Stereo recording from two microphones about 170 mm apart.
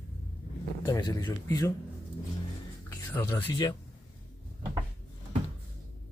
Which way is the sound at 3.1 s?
10° left (ahead or behind).